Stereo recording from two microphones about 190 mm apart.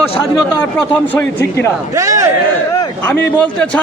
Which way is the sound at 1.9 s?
15° right (ahead or behind).